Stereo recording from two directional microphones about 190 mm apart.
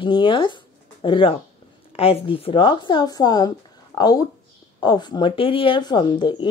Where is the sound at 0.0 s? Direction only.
25° left (ahead or behind).